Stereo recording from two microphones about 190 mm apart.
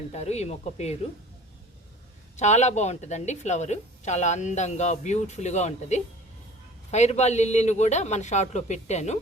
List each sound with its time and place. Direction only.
0.1 s a woman's voice: 35° left (ahead or behind)
2.3 s a woman's voice: 35° left (ahead or behind)